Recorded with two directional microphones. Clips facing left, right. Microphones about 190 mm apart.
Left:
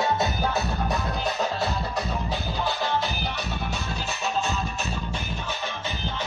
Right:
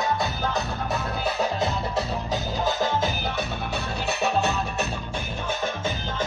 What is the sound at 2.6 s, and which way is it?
Music, 45° right (ahead or behind).